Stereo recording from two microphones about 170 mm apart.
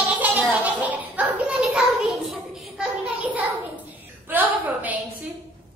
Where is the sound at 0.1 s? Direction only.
10° right (ahead or behind).